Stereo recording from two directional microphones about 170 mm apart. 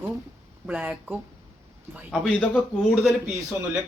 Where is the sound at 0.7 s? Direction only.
5° right (ahead or behind).